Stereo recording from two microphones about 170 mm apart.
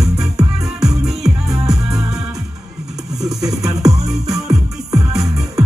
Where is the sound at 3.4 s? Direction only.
20° right (ahead or behind).